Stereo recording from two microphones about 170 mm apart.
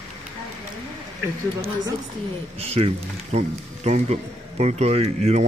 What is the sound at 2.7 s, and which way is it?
Speech, 40° right (ahead or behind).